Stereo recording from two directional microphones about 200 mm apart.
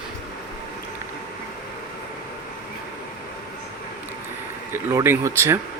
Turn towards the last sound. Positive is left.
turn(degrees=-10)  # may be behind; listen again after turning